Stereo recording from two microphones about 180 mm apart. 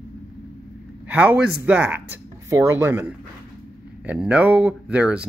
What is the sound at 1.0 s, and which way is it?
A man's voice, 10° right (ahead or behind).